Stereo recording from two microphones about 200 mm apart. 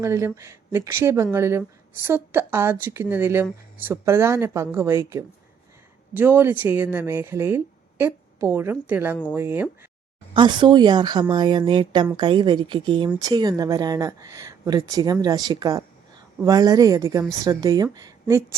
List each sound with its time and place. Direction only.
0.0 s speech: 15° right (ahead or behind)
10.3 s speech: 25° right (ahead or behind)